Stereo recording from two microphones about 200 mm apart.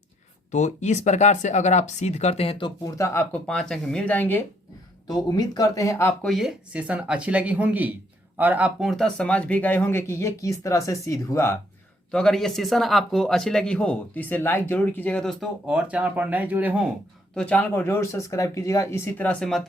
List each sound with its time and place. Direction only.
0.5 s speech: 35° left (ahead or behind); by 4.4 s 10° left (ahead or behind)
5.0 s speech: 20° left (ahead or behind)
6.2 s speech: centre (ahead or behind); by 11.5 s 15° left (ahead or behind)
12.1 s speech: centre (ahead or behind)
17.3 s speech: 5° left (ahead or behind)